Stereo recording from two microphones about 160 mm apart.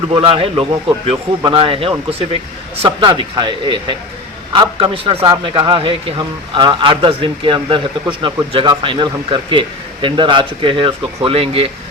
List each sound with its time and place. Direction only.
0.1 s speech: 35° right (ahead or behind)